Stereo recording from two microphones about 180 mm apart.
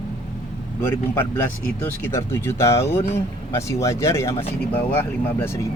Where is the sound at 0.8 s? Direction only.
10° left (ahead or behind).